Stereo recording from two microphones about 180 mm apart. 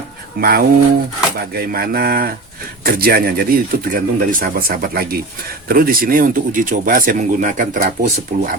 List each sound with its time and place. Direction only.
0.3 s speech: 60° right (ahead or behind)